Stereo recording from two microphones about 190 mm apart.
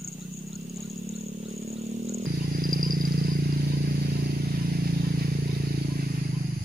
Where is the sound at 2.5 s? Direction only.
45° right (ahead or behind).